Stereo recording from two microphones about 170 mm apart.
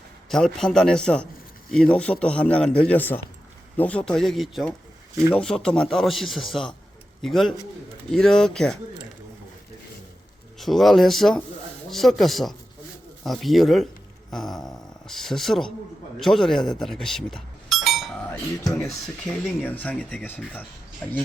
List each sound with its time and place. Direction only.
0.3 s speech: centre (ahead or behind)
10.6 s speech: centre (ahead or behind)
14.3 s a sound: centre (ahead or behind)
15.0 s speech: centre (ahead or behind)